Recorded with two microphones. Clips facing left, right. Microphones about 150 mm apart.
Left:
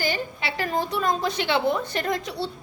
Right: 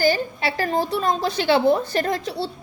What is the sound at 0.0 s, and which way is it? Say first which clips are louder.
A woman's voice: right 7 dB; 40° right (ahead or behind).